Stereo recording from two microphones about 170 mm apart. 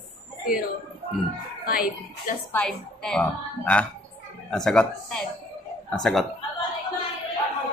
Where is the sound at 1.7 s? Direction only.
60° left (ahead or behind).